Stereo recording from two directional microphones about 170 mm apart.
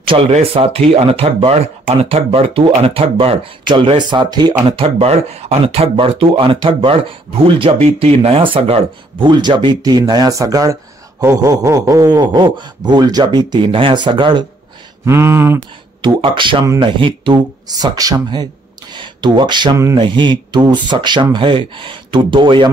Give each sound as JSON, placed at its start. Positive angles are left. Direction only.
{"t": 0.0, "sound": "speech", "side_deg": -35}
{"t": 15.0, "sound": "a sound", "side_deg": -15}
{"t": 16.0, "sound": "speech", "side_deg": -30}